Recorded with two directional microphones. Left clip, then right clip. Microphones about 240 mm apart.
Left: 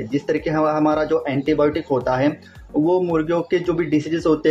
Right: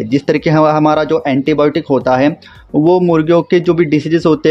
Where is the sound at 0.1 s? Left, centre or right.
Right.